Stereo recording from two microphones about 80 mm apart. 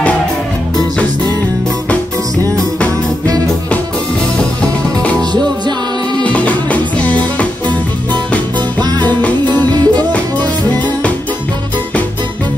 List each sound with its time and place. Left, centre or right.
6.2 s music: centre